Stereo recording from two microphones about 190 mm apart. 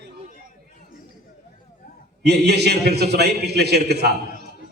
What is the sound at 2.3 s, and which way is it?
A man's voice, 60° right (ahead or behind).